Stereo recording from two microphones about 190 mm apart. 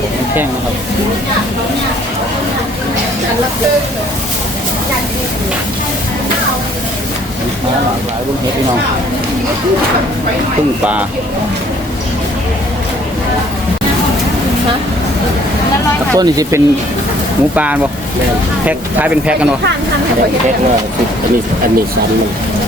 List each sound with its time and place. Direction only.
16.1 s speech: 20° right (ahead or behind)